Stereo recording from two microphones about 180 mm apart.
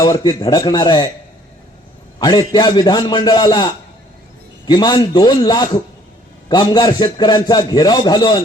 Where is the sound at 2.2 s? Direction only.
20° left (ahead or behind).